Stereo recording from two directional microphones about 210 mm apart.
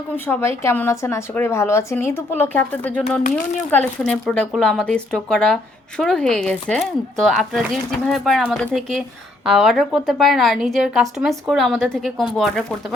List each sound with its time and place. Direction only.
0.3 s a woman's voice: 10° left (ahead or behind)
3.2 s speech: 40° left (ahead or behind)
3.7 s a woman's voice: 5° left (ahead or behind)